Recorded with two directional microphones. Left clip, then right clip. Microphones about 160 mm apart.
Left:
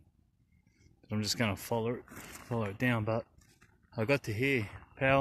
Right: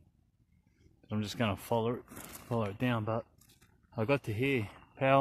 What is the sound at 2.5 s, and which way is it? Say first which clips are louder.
Speech: left 1 dB; centre (ahead or behind).